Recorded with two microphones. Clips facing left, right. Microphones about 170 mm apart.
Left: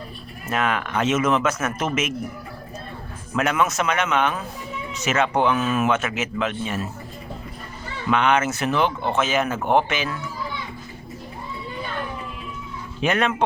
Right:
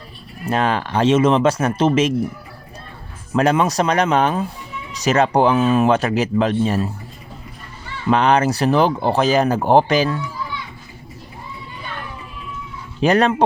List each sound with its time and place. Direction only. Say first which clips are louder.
0.4 s speech: right 4 dB; 30° right (ahead or behind)
3.3 s speech: right 5 dB; 30° right (ahead or behind)
8.1 s speech: right 4 dB; 35° right (ahead or behind)
13.0 s speech: right 6 dB; 35° right (ahead or behind)